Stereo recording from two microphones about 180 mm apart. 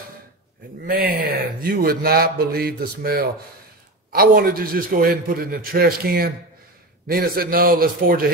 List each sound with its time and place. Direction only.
0.8 s a man's voice: 50° right (ahead or behind)